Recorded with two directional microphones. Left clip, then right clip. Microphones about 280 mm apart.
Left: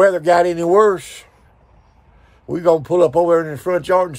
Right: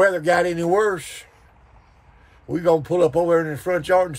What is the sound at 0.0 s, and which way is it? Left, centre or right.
Speech, centre.